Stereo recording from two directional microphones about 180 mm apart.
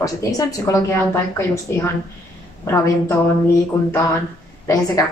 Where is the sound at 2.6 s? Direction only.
15° left (ahead or behind).